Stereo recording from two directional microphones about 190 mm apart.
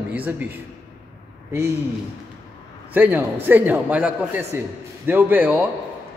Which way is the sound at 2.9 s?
10° right (ahead or behind).